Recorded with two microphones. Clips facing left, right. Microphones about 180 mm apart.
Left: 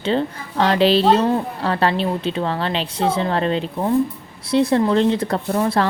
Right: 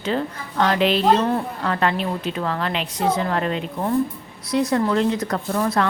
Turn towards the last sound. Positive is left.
turn(degrees=30)  # may be behind; listen again after turning